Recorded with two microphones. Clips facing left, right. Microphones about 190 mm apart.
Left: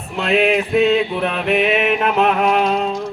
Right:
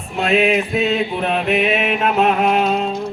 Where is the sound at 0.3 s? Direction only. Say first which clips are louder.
Left 2 dB; 60° left (ahead or behind).